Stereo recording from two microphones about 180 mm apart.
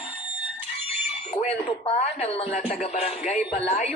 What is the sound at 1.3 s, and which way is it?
A woman's voice, 40° left (ahead or behind).